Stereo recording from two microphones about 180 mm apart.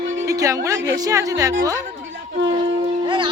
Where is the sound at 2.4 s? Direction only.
30° right (ahead or behind).